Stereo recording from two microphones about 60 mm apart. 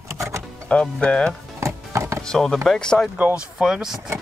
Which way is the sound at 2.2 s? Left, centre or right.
Centre.